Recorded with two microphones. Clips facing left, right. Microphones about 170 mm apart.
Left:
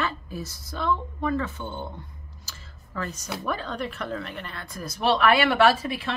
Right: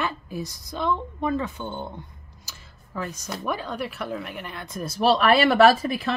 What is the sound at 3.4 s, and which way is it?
Speech, 10° right (ahead or behind).